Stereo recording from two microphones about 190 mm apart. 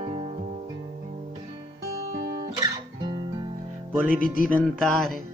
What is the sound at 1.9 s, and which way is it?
Music, 35° right (ahead or behind).